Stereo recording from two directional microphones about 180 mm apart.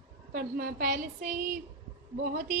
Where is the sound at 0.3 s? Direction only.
55° right (ahead or behind).